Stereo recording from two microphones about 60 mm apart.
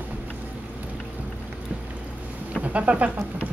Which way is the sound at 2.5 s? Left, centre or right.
Right.